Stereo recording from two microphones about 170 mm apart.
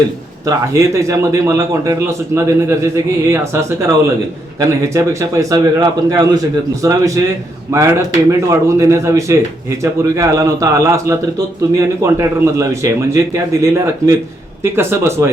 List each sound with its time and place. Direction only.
0.4 s speech: 20° right (ahead or behind)
4.9 s a man's voice: 20° right (ahead or behind)